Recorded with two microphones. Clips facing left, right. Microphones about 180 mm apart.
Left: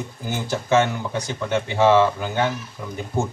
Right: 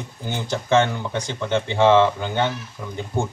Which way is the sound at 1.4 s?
25° right (ahead or behind).